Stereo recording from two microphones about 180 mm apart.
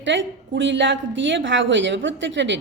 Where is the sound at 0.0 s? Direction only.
90° right.